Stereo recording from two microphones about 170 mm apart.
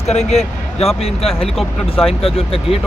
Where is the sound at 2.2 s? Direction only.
35° left (ahead or behind).